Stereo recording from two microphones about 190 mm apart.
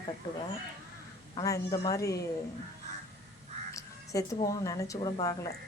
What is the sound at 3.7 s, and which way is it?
Speech, 15° left (ahead or behind).